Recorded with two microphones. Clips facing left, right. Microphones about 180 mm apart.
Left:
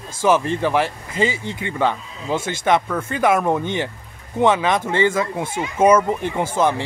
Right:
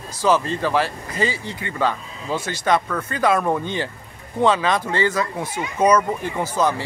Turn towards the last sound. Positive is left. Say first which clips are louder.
# left 2 dB
turn(degrees=25)  # may be behind; listen again after turning